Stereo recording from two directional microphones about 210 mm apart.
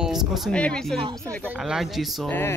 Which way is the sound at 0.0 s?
Centre (ahead or behind).